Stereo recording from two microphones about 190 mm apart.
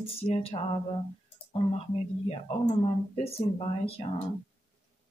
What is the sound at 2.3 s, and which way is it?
Speech, 30° left (ahead or behind).